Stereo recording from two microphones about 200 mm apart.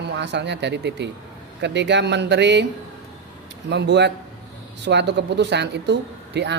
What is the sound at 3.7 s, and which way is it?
Speech, 60° right (ahead or behind).